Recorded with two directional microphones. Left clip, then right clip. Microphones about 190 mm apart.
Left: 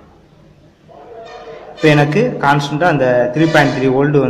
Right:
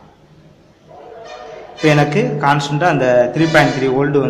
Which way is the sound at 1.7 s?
10° left (ahead or behind).